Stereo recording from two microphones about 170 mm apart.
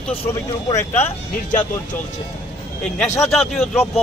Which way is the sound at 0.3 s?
15° left (ahead or behind).